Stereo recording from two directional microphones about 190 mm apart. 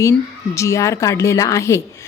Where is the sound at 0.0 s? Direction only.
15° left (ahead or behind).